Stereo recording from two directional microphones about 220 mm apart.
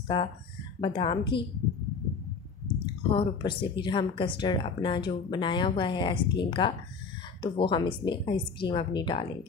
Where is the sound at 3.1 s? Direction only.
20° left (ahead or behind).